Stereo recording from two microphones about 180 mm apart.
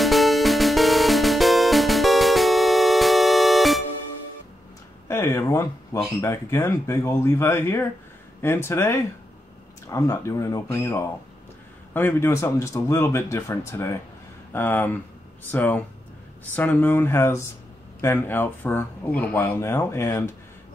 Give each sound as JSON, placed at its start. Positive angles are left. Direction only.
{"t": 0.0, "sound": "music", "side_deg": 0}
{"t": 5.0, "sound": "a sound", "side_deg": 15}
{"t": 5.9, "sound": "speech", "side_deg": 20}